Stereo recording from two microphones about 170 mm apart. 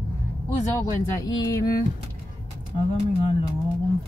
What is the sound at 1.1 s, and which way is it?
Speech, 20° left (ahead or behind).